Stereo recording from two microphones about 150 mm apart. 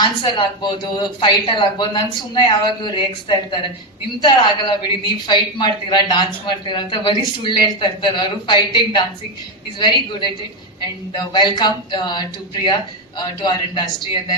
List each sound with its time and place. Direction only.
0.0 s a woman's voice: 30° left (ahead or behind)